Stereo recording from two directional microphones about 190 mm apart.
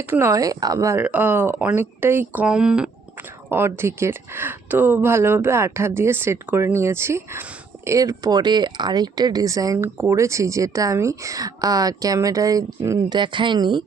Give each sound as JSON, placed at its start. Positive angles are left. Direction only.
{"t": 0.0, "sound": "speech", "side_deg": -15}